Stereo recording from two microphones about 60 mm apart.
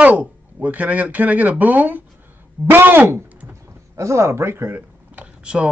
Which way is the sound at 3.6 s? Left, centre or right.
Right.